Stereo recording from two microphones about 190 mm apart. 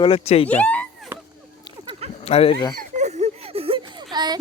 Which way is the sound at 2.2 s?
30° left (ahead or behind).